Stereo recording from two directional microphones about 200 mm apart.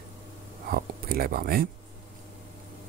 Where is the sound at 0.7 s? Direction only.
45° right (ahead or behind).